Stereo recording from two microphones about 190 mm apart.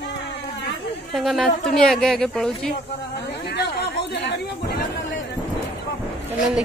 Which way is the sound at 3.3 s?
60° left (ahead or behind).